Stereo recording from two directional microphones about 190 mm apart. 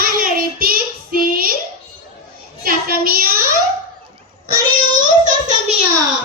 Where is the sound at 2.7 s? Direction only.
50° right (ahead or behind).